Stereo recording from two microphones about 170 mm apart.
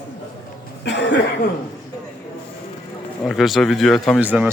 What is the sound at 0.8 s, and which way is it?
Cough, 90° left.